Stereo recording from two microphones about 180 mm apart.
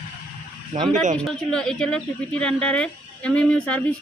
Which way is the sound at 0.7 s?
40° right (ahead or behind).